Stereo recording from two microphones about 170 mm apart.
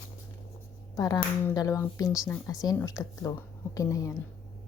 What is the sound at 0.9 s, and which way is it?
Speech, 20° left (ahead or behind).